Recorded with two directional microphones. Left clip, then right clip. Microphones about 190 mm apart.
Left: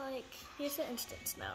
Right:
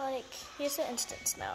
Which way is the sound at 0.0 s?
20° left (ahead or behind).